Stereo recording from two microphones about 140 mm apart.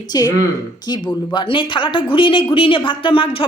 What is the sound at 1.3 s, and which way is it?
A woman's voice, 40° left (ahead or behind).